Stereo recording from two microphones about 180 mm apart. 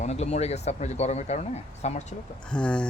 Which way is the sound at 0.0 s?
35° left (ahead or behind).